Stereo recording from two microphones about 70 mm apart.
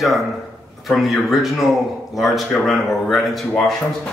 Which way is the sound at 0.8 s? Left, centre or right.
Centre.